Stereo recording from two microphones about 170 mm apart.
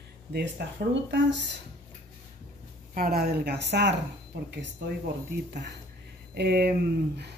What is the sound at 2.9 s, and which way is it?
Speech, 60° right (ahead or behind).